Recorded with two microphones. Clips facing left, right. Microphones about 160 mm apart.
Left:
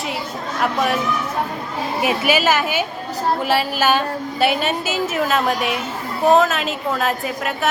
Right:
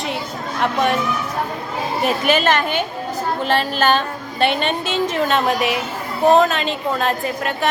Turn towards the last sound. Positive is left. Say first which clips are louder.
# right 1 dB
turn(degrees=0)  # may be behind; listen again after turning